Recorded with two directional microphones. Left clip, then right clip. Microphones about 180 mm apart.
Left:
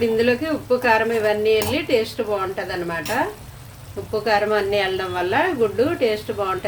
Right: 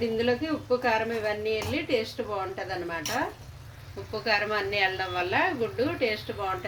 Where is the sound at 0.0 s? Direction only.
20° left (ahead or behind).